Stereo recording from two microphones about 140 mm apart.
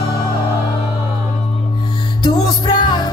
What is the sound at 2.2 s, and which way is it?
Music, 35° left (ahead or behind).